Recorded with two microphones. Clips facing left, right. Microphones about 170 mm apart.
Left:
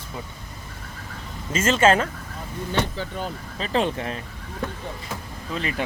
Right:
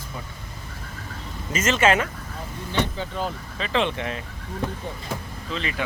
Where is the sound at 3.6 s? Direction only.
40° left (ahead or behind).